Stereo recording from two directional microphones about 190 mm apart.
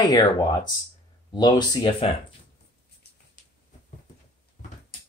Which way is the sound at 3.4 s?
45° left (ahead or behind).